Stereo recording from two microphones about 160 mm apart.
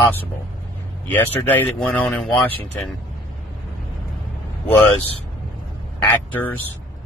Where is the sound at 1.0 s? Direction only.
10° left (ahead or behind).